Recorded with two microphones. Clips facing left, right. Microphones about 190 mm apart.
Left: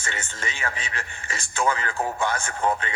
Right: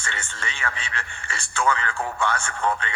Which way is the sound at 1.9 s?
20° left (ahead or behind).